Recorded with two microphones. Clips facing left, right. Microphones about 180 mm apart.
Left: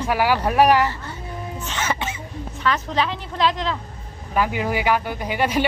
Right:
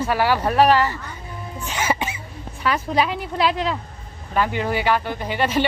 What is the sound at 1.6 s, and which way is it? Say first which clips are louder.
Throat clearing: right 3 dB; 10° right (ahead or behind).